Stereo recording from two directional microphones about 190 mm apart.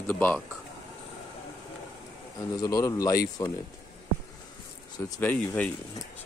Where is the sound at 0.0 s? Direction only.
10° left (ahead or behind).